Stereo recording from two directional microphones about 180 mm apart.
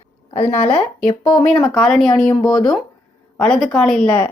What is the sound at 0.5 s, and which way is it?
Speech, 30° left (ahead or behind).